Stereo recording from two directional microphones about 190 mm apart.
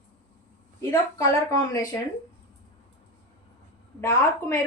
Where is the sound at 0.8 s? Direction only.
15° left (ahead or behind).